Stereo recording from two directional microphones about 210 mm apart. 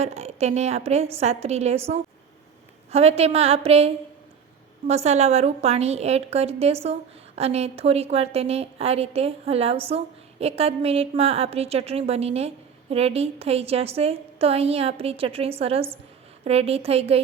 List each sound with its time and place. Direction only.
0.0 s a woman's voice: 30° right (ahead or behind)
2.9 s a woman's voice: 30° right (ahead or behind)